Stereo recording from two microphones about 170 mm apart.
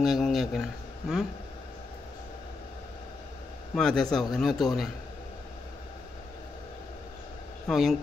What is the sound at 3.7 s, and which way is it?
Speech, centre (ahead or behind).